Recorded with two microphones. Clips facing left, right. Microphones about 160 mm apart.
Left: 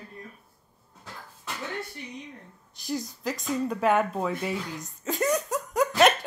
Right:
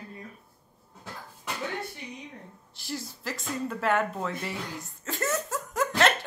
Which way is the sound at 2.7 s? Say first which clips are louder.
Left 5 dB; 20° left (ahead or behind).